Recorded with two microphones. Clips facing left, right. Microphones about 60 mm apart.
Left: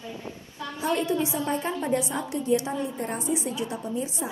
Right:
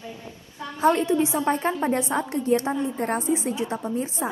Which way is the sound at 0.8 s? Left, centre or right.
Right.